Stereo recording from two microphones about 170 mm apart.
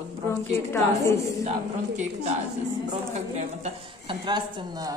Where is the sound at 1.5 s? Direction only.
40° right (ahead or behind).